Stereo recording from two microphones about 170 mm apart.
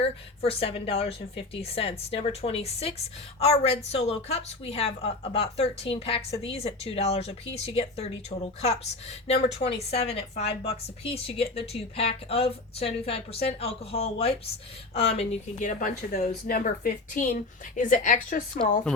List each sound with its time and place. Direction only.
0.0 s a woman's voice: 35° left (ahead or behind); by 18.6 s 55° left (ahead or behind)